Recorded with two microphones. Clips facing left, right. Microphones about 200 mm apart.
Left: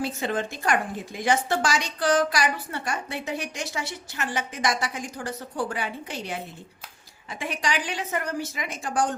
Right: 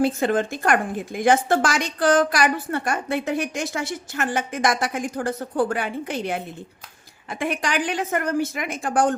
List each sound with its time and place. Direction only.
0.0 s a woman's voice: 50° right (ahead or behind)